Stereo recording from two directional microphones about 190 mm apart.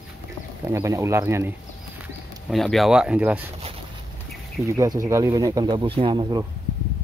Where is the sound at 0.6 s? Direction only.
15° right (ahead or behind).